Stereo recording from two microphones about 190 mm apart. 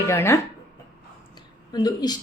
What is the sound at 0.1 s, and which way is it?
Speech, 15° left (ahead or behind).